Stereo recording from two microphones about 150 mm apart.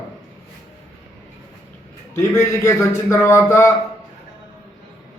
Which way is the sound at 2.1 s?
15° left (ahead or behind).